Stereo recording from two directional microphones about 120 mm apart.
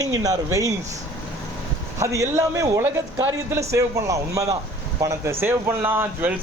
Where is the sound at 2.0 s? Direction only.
25° right (ahead or behind).